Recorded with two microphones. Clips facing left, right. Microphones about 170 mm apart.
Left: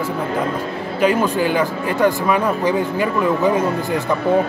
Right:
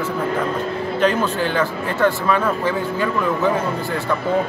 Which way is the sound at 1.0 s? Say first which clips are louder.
Left 3 dB; 10° left (ahead or behind).